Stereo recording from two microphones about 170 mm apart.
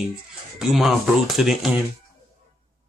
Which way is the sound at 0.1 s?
Centre (ahead or behind).